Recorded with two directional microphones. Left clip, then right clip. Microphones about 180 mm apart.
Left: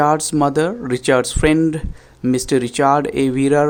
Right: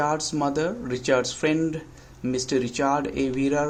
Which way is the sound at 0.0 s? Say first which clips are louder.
Left 9 dB; 45° left (ahead or behind).